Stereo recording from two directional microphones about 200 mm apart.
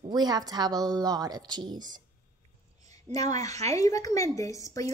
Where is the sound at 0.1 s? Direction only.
20° right (ahead or behind).